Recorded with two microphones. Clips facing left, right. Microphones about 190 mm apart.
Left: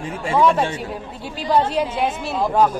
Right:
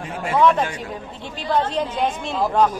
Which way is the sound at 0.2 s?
30° left (ahead or behind).